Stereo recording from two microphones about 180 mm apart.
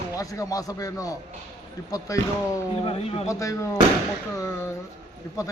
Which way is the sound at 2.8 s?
35° left (ahead or behind).